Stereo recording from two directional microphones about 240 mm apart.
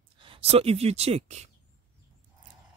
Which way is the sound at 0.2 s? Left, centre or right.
Right.